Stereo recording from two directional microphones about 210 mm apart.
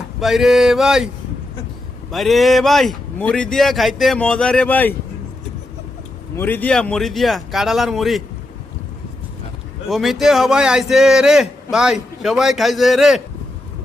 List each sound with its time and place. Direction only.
0.2 s a man's voice: centre (ahead or behind)
6.3 s a man's voice: 10° left (ahead or behind)
9.9 s a man's voice: centre (ahead or behind)